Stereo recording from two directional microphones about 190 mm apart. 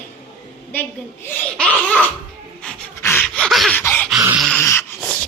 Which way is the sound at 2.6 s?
10° left (ahead or behind).